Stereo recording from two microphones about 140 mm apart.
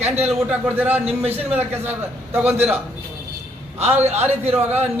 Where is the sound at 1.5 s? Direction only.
15° right (ahead or behind).